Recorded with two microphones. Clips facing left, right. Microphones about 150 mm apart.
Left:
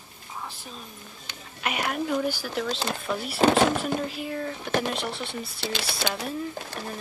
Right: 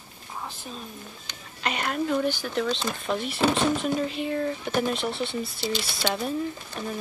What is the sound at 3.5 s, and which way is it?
Speech, 75° left (ahead or behind).